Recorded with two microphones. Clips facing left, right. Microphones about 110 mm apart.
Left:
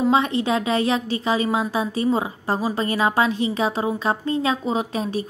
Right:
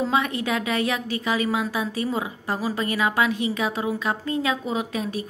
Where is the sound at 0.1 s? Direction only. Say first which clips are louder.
Left 4 dB; 30° left (ahead or behind).